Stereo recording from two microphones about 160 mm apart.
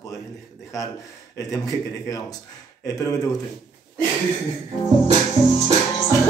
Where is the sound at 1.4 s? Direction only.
20° left (ahead or behind).